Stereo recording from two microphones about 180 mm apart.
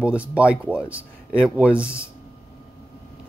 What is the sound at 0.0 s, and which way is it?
Speech, 5° right (ahead or behind).